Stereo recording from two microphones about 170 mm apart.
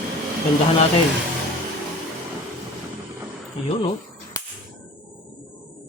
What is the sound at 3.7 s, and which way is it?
Speech, 35° left (ahead or behind).